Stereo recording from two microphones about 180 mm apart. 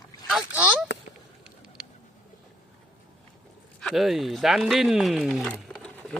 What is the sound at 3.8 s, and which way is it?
Speech, centre (ahead or behind).